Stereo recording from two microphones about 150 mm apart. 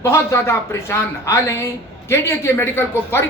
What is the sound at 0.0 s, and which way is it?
Speech, 15° left (ahead or behind).